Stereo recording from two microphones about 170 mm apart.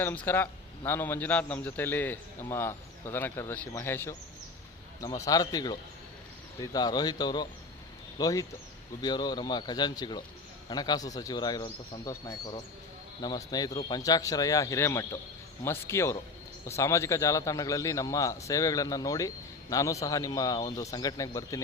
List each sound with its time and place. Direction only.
0.0 s a man's voice: 10° left (ahead or behind)